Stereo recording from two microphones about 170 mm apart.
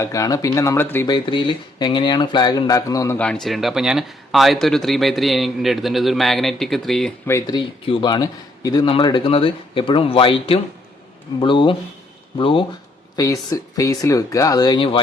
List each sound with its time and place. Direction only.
0.0 s speech: 20° left (ahead or behind)
1.0 s speech: 25° left (ahead or behind)
3.2 s speech: 5° left (ahead or behind)
7.3 s a man's voice: 20° left (ahead or behind)
13.1 s speech: 20° left (ahead or behind)